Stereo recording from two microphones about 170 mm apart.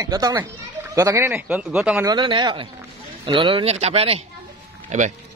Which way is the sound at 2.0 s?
25° right (ahead or behind).